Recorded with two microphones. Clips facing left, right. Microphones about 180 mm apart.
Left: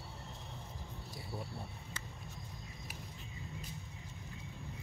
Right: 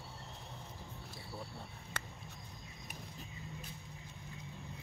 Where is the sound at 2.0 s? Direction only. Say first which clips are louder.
Right 7 dB; 70° right (ahead or behind).